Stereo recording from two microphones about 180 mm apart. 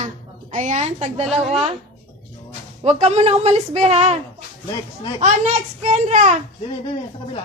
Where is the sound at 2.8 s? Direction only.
35° right (ahead or behind).